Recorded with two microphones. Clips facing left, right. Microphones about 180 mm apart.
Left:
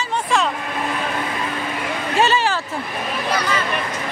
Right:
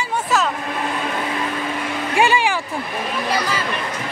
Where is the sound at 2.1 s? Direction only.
15° right (ahead or behind).